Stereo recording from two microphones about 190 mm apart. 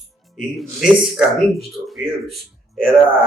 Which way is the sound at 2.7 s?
Centre (ahead or behind).